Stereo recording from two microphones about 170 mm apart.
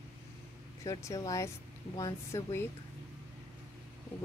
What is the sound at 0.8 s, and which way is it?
Speech, 15° left (ahead or behind).